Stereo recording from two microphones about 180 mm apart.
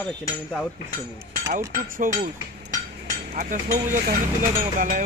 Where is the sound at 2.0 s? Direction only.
50° right (ahead or behind).